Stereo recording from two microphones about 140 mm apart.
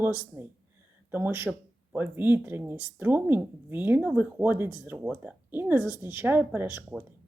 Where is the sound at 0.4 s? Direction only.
15° right (ahead or behind).